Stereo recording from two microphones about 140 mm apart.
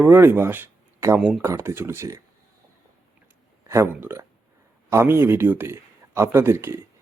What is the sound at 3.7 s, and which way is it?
Speech, 20° right (ahead or behind).